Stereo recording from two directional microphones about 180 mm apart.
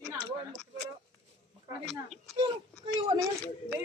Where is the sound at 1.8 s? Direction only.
Centre (ahead or behind).